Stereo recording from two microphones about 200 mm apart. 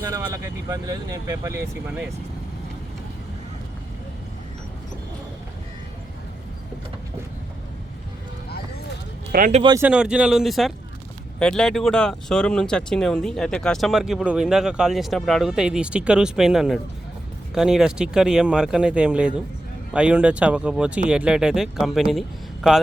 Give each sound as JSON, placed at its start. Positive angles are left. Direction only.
{"t": 0.1, "sound": "speech", "side_deg": -15}
{"t": 9.3, "sound": "speech", "side_deg": -45}
{"t": 9.7, "sound": "speech", "side_deg": -5}